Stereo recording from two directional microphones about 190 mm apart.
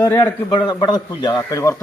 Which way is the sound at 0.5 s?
25° left (ahead or behind).